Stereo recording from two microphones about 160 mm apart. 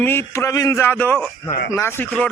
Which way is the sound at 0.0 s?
15° left (ahead or behind).